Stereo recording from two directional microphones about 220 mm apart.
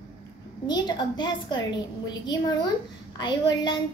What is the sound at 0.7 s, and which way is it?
A woman's voice, 20° left (ahead or behind).